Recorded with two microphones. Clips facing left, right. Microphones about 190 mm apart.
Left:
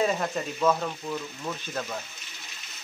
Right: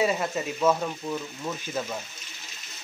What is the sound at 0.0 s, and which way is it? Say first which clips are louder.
Speech: right 1 dB; 5° right (ahead or behind).